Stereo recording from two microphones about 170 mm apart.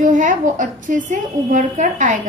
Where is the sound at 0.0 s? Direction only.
50° right (ahead or behind).